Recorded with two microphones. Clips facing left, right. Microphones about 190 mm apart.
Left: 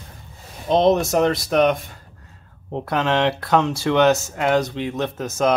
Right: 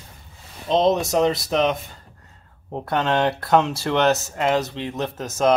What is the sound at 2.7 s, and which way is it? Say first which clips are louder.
Speech: left 1 dB; centre (ahead or behind).